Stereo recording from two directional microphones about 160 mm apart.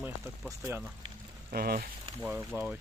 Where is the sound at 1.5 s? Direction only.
70° right (ahead or behind).